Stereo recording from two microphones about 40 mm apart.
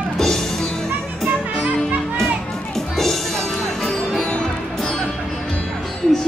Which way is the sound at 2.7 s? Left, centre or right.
Centre.